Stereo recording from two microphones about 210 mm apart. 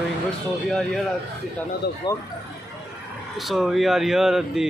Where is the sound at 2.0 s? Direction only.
20° left (ahead or behind).